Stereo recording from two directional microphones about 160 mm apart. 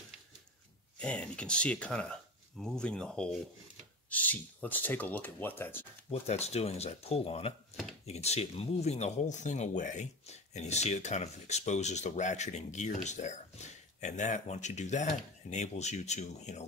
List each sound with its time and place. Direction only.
0.9 s speech: 5° left (ahead or behind)
6.0 s speech: 40° left (ahead or behind)